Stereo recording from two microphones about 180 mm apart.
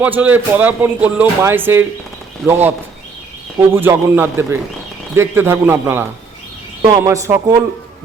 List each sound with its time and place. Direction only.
0.0 s speech: 10° right (ahead or behind)